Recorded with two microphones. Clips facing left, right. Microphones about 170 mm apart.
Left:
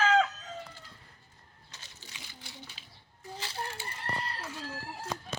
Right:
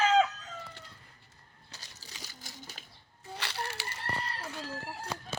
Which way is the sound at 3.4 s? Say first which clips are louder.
Right 1 dB; 75° right (ahead or behind).